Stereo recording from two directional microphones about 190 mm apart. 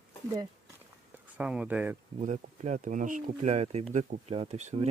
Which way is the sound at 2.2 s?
40° right (ahead or behind).